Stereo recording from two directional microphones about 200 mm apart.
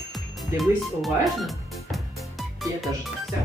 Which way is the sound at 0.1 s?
Centre (ahead or behind).